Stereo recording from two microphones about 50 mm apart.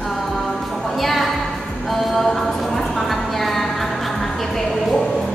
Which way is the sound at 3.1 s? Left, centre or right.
Centre.